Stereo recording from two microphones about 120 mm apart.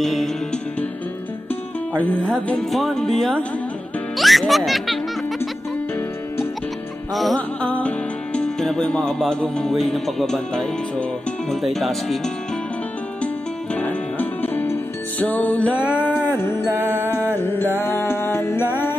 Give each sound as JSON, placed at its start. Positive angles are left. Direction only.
{"t": 0.0, "sound": "music", "side_deg": 0}
{"t": 1.5, "sound": "music", "side_deg": 10}
{"t": 4.2, "sound": "speech", "side_deg": 0}
{"t": 7.2, "sound": "music", "side_deg": 0}
{"t": 11.6, "sound": "speech", "side_deg": 0}
{"t": 13.7, "sound": "music", "side_deg": 15}
{"t": 15.8, "sound": "a sound", "side_deg": -10}
{"t": 16.7, "sound": "music", "side_deg": -15}
{"t": 17.4, "sound": "music", "side_deg": 20}